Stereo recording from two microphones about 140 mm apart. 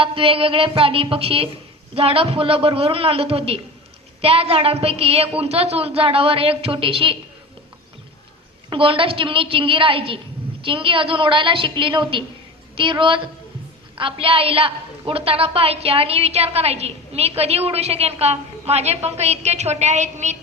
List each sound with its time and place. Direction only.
0.0 s a woman's voice: 40° right (ahead or behind)
8.7 s a woman's voice: 40° right (ahead or behind); by 20.3 s 55° right (ahead or behind)